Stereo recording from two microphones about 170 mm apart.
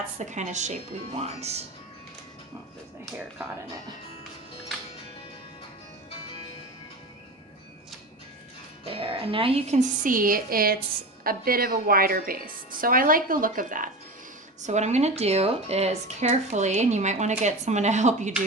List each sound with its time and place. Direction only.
0.2 s speech: 45° right (ahead or behind)
8.8 s a woman's voice: 35° right (ahead or behind)